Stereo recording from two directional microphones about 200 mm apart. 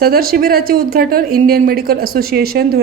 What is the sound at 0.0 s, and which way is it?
Speech, 50° right (ahead or behind).